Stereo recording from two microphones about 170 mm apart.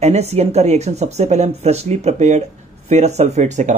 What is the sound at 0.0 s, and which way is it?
Speech, 40° right (ahead or behind).